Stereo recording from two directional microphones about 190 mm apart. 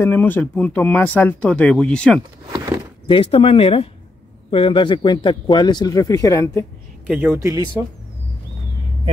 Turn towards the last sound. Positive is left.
turn(degrees=-15)  # may be behind; listen again after turning